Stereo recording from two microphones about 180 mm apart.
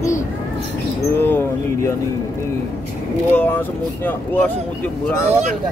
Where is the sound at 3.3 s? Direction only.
10° left (ahead or behind).